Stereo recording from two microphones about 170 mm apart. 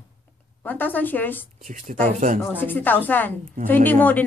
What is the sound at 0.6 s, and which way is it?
Speech, 10° left (ahead or behind).